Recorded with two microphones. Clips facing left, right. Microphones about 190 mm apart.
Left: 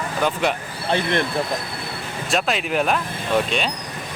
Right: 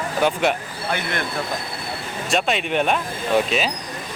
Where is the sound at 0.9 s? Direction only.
30° left (ahead or behind).